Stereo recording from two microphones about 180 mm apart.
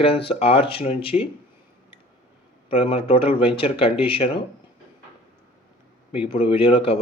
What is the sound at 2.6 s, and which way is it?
Speech, 30° left (ahead or behind).